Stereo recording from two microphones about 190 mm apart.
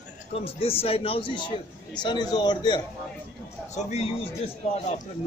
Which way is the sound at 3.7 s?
35° left (ahead or behind).